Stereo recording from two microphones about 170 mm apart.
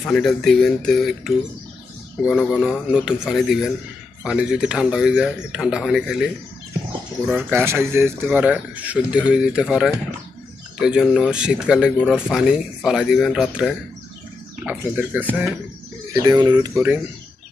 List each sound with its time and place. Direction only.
0.1 s speech: centre (ahead or behind)
7.2 s speech: 10° right (ahead or behind)
16.1 s speech: 20° right (ahead or behind)